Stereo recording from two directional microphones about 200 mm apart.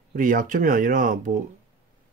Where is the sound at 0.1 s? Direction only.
40° right (ahead or behind).